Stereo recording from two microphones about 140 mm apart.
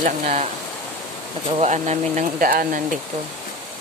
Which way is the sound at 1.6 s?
55° right (ahead or behind).